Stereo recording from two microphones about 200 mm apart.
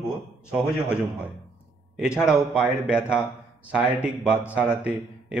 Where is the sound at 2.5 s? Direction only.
5° right (ahead or behind).